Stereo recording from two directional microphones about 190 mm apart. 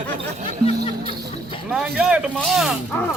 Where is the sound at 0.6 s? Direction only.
30° left (ahead or behind).